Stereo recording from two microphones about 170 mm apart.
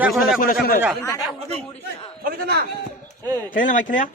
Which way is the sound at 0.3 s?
60° left (ahead or behind).